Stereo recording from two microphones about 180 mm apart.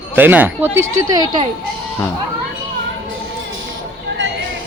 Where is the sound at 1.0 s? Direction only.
20° right (ahead or behind).